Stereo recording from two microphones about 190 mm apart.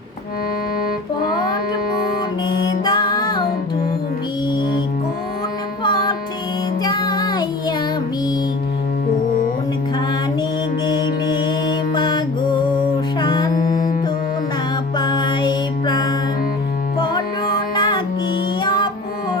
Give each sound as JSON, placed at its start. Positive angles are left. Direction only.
{"t": 2.8, "sound": "music", "side_deg": 20}
{"t": 5.8, "sound": "music", "side_deg": 25}
{"t": 10.8, "sound": "mantra", "side_deg": 25}
{"t": 13.1, "sound": "music", "side_deg": 20}
{"t": 13.5, "sound": "music", "side_deg": 45}
{"t": 14.9, "sound": "music", "side_deg": 25}